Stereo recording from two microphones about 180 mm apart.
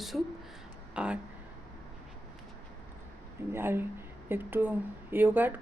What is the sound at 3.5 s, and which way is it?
Speech, 10° right (ahead or behind).